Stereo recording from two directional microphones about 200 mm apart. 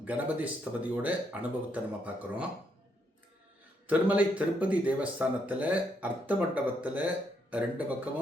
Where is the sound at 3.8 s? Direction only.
10° right (ahead or behind).